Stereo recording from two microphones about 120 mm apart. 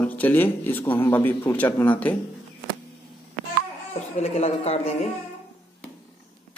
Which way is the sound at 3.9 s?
65° left (ahead or behind).